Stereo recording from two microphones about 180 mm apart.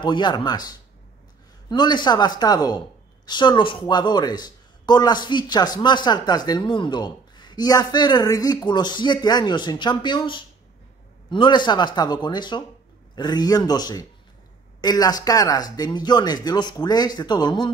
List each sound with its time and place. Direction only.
0.0 s a man's voice: 25° left (ahead or behind)